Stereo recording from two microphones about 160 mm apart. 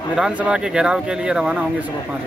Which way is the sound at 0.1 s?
5° right (ahead or behind).